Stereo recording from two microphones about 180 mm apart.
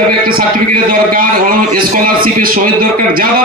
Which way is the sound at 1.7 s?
50° right (ahead or behind).